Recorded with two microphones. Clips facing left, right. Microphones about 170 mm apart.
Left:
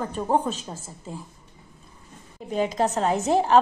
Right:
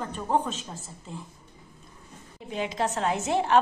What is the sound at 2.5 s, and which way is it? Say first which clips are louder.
A woman's voice: left 5 dB; 40° left (ahead or behind).